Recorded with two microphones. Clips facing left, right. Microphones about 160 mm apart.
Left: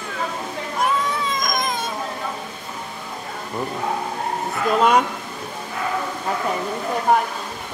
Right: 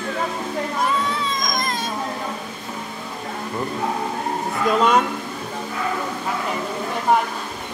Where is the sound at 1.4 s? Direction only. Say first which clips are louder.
Left 1 dB; 10° left (ahead or behind).